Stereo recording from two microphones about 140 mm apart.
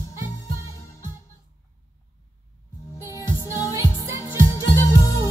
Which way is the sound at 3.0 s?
25° left (ahead or behind).